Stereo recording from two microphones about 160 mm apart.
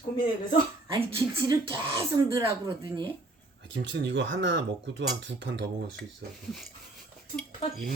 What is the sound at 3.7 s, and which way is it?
Speech, 90° right.